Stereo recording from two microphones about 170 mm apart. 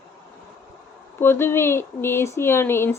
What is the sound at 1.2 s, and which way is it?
Speech, 15° left (ahead or behind).